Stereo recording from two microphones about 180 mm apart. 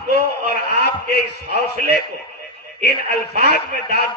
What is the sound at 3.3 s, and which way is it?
Speech, 65° left (ahead or behind).